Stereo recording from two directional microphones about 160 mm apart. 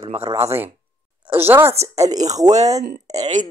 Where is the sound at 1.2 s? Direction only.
15° right (ahead or behind).